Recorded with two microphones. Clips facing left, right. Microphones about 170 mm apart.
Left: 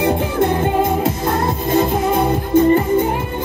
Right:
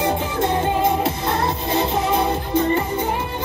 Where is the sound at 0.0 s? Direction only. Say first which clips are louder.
Left 4 dB; 55° left (ahead or behind).